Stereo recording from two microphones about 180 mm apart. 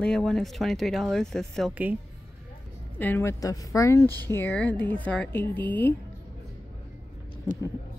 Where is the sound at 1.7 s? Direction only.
10° right (ahead or behind).